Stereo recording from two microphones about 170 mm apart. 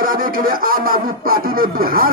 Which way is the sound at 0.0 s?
55° right (ahead or behind).